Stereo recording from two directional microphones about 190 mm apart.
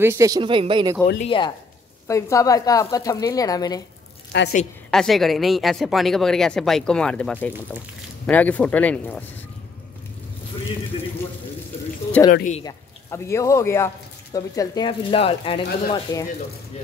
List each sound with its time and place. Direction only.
0.0 s speech: 15° right (ahead or behind)
1.2 s speech: 25° left (ahead or behind)
4.3 s a woman's voice: 65° left (ahead or behind)
4.9 s speech: centre (ahead or behind)
12.2 s speech: 10° left (ahead or behind)